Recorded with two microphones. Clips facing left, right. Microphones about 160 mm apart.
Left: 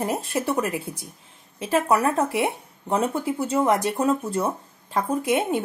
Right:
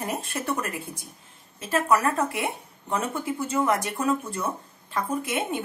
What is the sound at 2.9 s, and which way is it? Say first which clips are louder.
Speech: left 5 dB; 30° left (ahead or behind).